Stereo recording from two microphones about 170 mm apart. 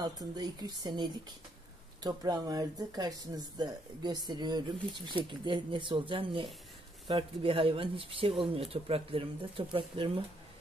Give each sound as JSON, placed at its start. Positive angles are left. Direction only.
{"t": 0.0, "sound": "speech", "side_deg": -25}